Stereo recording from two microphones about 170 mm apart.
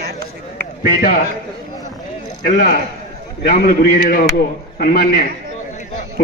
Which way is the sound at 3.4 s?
60° left (ahead or behind).